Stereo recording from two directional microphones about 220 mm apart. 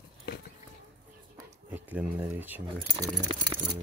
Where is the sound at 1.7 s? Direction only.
5° right (ahead or behind).